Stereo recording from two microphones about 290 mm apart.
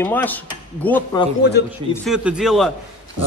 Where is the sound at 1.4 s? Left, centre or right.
Left.